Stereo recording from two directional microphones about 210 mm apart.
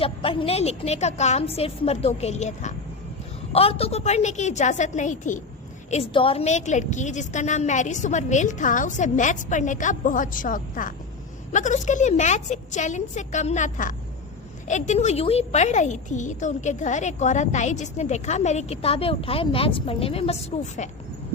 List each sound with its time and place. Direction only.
0.0 s a woman's voice: 25° left (ahead or behind)